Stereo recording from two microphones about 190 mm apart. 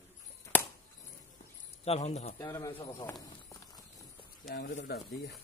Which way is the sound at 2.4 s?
15° left (ahead or behind).